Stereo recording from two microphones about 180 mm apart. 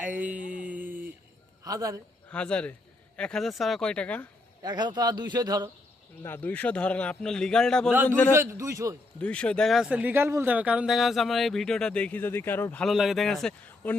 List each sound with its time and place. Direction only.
0.0 s a sound: 10° right (ahead or behind)
1.6 s speech: 20° right (ahead or behind)
2.3 s a man's voice: 5° left (ahead or behind)
4.6 s speech: 25° right (ahead or behind)
6.2 s a man's voice: 10° left (ahead or behind)
8.3 s a man's voice: 15° right (ahead or behind)
9.2 s speech: 5° left (ahead or behind)